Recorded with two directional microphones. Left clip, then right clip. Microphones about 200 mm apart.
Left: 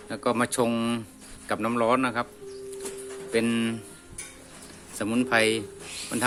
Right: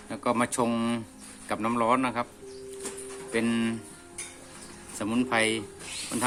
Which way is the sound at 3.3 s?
10° left (ahead or behind).